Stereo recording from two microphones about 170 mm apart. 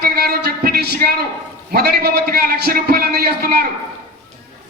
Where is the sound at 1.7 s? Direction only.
65° right (ahead or behind).